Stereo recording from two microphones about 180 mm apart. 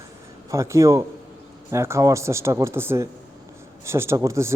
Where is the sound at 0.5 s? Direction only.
15° right (ahead or behind).